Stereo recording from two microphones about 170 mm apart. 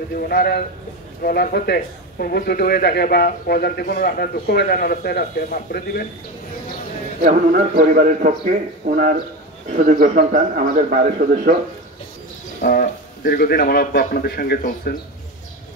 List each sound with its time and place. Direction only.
0.3 s speech: 65° left (ahead or behind)
7.2 s a man's voice: 55° right (ahead or behind)
12.6 s speech: 60° left (ahead or behind)